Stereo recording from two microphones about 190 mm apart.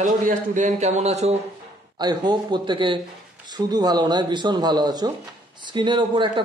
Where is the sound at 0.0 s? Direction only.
40° right (ahead or behind).